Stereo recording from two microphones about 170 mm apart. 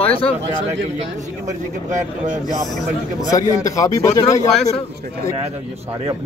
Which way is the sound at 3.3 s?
20° left (ahead or behind).